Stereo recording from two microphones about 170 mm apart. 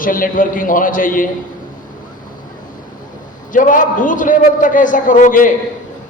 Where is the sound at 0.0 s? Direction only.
55° left (ahead or behind).